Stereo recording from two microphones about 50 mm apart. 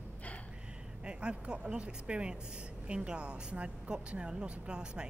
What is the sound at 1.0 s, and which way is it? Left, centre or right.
A man's voice, centre.